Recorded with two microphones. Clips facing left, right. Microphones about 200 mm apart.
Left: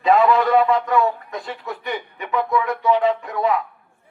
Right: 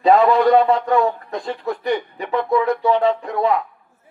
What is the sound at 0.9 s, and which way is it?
A man's voice, 35° right (ahead or behind).